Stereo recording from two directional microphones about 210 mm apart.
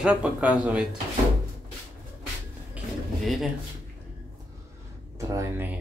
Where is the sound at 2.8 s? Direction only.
5° right (ahead or behind).